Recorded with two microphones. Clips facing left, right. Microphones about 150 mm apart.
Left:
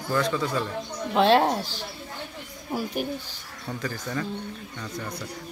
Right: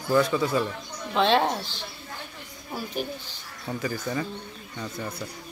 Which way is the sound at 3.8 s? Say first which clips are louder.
Right 2 dB; 10° right (ahead or behind).